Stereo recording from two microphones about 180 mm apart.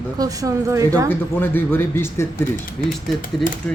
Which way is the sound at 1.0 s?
10° left (ahead or behind).